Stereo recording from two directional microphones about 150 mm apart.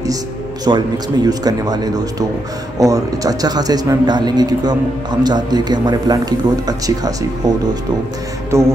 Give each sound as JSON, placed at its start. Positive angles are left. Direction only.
{"t": 0.7, "sound": "a man's voice", "side_deg": -30}